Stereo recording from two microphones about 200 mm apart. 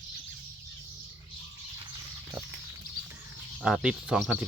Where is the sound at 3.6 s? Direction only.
5° right (ahead or behind).